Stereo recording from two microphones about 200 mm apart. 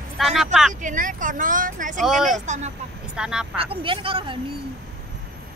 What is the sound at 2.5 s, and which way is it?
Speech, 35° right (ahead or behind).